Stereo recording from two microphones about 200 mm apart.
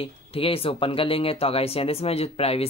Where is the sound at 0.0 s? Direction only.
30° left (ahead or behind).